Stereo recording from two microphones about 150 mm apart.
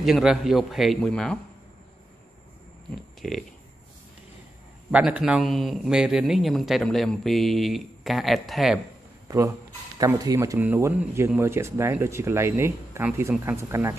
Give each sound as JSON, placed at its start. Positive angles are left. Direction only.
{"t": 0.0, "sound": "a man's voice", "side_deg": -5}
{"t": 3.2, "sound": "speech", "side_deg": 0}
{"t": 4.9, "sound": "a man's voice", "side_deg": -5}
{"t": 9.9, "sound": "speech", "side_deg": -25}